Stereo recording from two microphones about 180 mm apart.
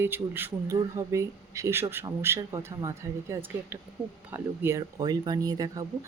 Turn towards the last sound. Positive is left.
turn(degrees=-20)  # may be behind; listen again after turning